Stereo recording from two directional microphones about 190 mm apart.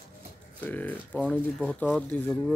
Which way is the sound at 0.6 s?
10° left (ahead or behind).